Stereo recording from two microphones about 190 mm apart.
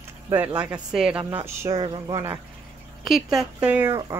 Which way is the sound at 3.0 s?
Centre (ahead or behind).